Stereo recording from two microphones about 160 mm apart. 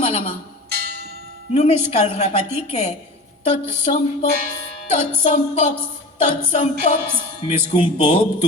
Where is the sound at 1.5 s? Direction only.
45° left (ahead or behind).